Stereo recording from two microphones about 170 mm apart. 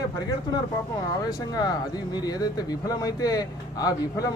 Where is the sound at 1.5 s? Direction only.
25° left (ahead or behind).